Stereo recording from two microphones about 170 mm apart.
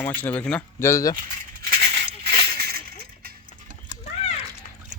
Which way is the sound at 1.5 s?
70° right (ahead or behind).